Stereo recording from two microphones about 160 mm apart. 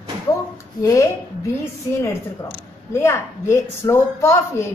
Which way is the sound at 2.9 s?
15° left (ahead or behind).